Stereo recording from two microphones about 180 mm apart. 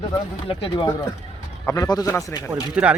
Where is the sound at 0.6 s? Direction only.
25° left (ahead or behind).